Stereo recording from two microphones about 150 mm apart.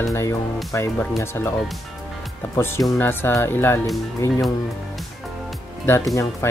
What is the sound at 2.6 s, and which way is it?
Speech, 20° left (ahead or behind).